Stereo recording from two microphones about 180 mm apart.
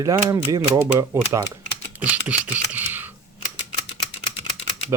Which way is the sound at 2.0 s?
10° right (ahead or behind).